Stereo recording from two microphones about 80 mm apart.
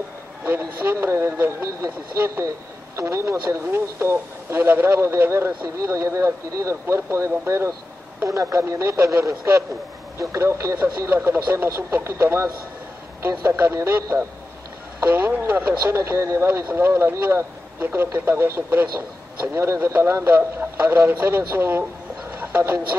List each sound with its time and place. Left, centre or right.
0.5 s speech: right
16.0 s speech: right
22.3 s a sound: right